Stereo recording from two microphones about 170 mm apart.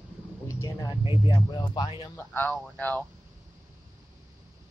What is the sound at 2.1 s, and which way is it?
Speech, 10° left (ahead or behind).